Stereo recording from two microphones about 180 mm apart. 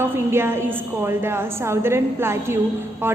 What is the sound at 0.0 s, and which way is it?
A woman's voice, 15° right (ahead or behind).